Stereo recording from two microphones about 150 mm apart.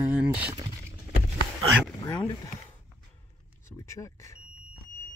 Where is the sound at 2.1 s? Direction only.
25° left (ahead or behind).